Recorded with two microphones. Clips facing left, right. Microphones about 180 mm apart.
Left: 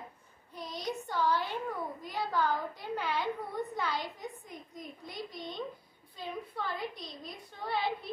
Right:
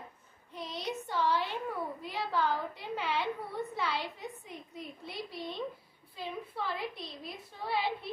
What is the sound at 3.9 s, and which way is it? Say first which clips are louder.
Speech: even; 40° left (ahead or behind).